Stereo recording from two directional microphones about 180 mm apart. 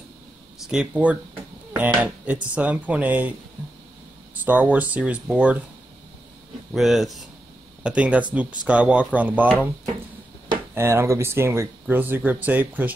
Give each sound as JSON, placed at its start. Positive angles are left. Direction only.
{"t": 0.7, "sound": "speech", "side_deg": -5}
{"t": 4.5, "sound": "speech", "side_deg": -10}
{"t": 6.7, "sound": "speech", "side_deg": 0}
{"t": 10.7, "sound": "speech", "side_deg": -15}